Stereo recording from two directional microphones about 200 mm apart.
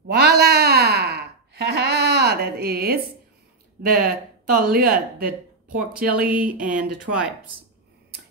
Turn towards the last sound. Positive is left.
turn(degrees=-5)  # may be behind; listen again after turning